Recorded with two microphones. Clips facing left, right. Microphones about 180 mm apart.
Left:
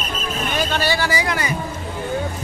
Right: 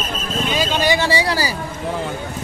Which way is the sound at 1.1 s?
30° right (ahead or behind).